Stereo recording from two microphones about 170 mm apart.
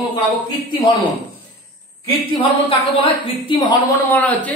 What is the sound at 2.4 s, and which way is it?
A woman's voice, 30° left (ahead or behind).